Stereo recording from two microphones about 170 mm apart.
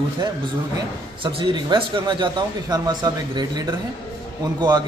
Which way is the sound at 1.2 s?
30° right (ahead or behind).